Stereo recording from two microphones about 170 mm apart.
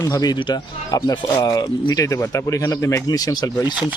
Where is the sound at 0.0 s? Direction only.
20° left (ahead or behind).